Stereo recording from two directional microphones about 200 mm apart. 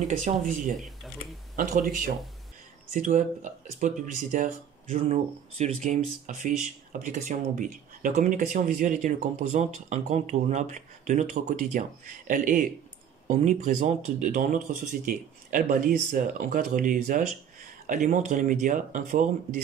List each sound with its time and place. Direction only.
0.2 s speech: 40° right (ahead or behind)
0.7 s cash register: centre (ahead or behind)
1.6 s speech: 40° right (ahead or behind)